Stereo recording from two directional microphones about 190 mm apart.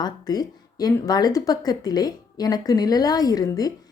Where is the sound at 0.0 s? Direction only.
20° left (ahead or behind).